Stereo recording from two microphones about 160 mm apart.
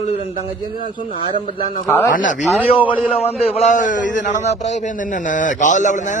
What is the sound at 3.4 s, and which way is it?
A man's voice, 40° left (ahead or behind).